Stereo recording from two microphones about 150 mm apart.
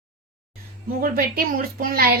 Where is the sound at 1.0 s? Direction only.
75° right (ahead or behind).